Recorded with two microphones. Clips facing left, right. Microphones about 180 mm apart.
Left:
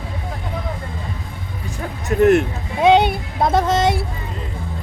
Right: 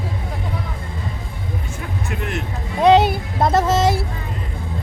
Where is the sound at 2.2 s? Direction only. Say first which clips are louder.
Left 18 dB; 50° left (ahead or behind).